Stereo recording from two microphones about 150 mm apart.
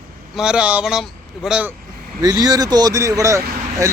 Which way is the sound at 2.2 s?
25° right (ahead or behind).